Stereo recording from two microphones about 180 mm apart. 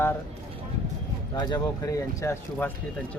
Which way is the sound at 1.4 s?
25° left (ahead or behind).